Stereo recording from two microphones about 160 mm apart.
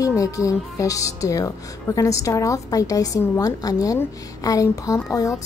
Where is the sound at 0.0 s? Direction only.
20° left (ahead or behind).